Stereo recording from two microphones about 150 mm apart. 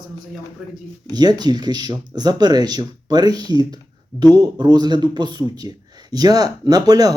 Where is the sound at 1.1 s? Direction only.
25° right (ahead or behind).